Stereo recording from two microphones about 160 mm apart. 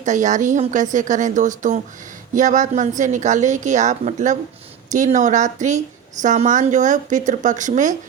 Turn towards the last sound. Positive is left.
turn(degrees=-50)  # may be behind; listen again after turning